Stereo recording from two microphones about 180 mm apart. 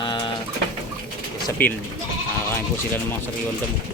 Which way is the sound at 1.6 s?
10° left (ahead or behind).